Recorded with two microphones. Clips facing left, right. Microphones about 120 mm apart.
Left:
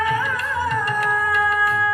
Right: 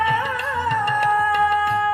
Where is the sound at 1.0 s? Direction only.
65° right (ahead or behind).